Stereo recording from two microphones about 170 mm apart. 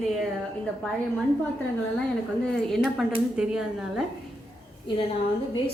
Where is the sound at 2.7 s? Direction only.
Centre (ahead or behind).